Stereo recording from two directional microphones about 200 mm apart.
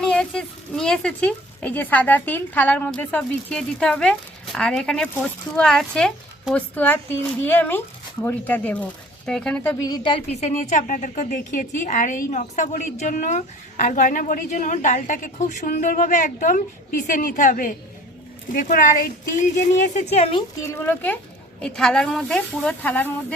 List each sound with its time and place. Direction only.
0.0 s speech: 5° left (ahead or behind)
9.8 s a woman's voice: 20° left (ahead or behind)
20.6 s speech: 10° left (ahead or behind)